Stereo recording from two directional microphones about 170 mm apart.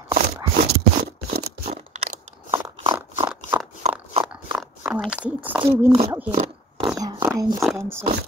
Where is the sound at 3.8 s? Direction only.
35° right (ahead or behind).